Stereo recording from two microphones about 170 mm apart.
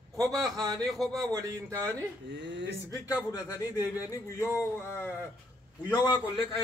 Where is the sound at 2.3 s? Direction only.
90° right.